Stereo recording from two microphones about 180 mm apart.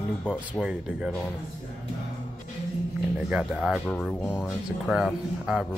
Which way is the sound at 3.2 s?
5° right (ahead or behind).